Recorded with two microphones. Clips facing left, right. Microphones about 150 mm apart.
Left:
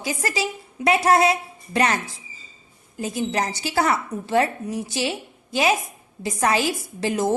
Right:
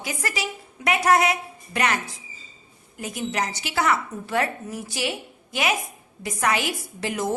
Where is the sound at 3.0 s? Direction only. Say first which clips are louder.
Left 3 dB; 30° left (ahead or behind).